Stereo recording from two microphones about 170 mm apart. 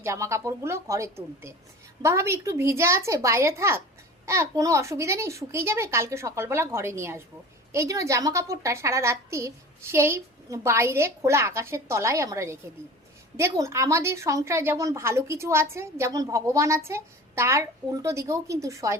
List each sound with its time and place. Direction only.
0.0 s a woman's voice: 15° right (ahead or behind)